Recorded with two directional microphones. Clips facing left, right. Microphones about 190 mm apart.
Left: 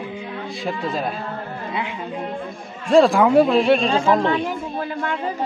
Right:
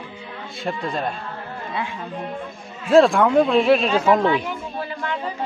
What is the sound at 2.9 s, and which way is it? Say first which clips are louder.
Speech: even; centre (ahead or behind).